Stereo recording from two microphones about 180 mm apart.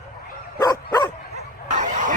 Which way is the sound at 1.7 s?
45° right (ahead or behind).